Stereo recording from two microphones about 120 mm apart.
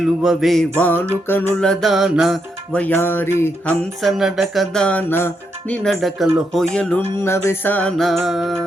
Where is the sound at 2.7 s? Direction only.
15° left (ahead or behind).